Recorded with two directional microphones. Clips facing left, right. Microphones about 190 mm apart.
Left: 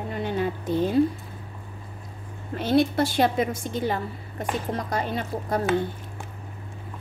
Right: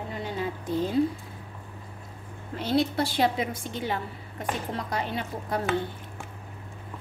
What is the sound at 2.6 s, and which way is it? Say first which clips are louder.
A woman's voice: left 4 dB; 55° left (ahead or behind).